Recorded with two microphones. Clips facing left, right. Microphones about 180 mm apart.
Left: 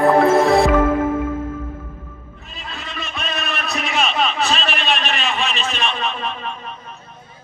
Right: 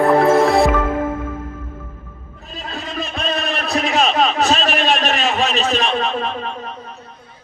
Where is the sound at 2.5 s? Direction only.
40° right (ahead or behind).